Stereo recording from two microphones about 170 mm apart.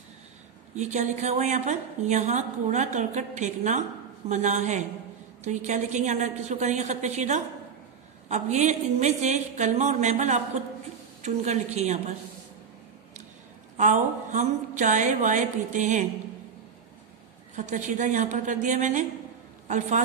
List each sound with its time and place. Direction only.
0.7 s a woman's voice: 45° right (ahead or behind)
13.7 s a woman's voice: 45° right (ahead or behind)
17.6 s a woman's voice: 45° right (ahead or behind)